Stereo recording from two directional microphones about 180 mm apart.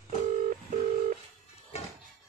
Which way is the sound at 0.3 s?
45° right (ahead or behind).